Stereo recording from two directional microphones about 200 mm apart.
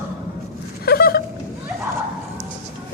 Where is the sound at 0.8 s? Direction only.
50° left (ahead or behind).